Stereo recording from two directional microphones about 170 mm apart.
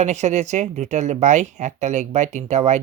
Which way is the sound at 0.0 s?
40° right (ahead or behind).